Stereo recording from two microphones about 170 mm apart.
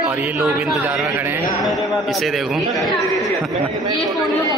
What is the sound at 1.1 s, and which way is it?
Speech, 10° right (ahead or behind).